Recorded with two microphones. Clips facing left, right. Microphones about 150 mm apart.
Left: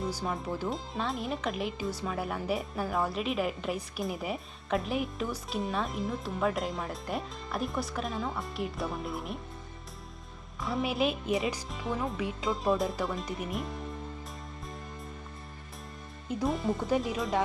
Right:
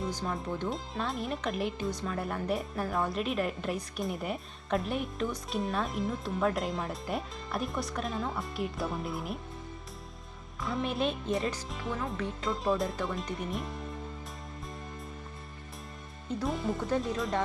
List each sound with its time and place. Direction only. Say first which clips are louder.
0.0 s speech: left 1 dB; 5° left (ahead or behind)
10.6 s speech: left 2 dB; centre (ahead or behind)
12.5 s speech: left 1 dB; centre (ahead or behind)
16.5 s speech: left 2 dB; centre (ahead or behind)